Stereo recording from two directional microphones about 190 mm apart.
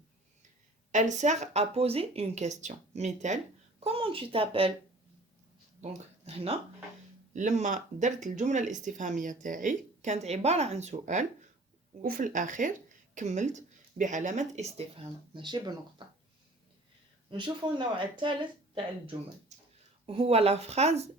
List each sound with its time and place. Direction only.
0.9 s speech: 40° right (ahead or behind)
5.8 s speech: 30° right (ahead or behind)
17.3 s speech: 25° right (ahead or behind)